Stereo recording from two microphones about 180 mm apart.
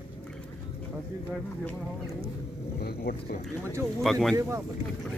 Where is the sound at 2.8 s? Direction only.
60° left (ahead or behind).